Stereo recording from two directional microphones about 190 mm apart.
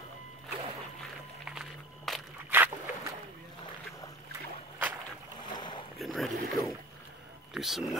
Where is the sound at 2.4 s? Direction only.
10° right (ahead or behind).